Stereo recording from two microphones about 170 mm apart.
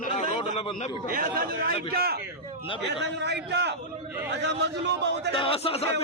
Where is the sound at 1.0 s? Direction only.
55° right (ahead or behind).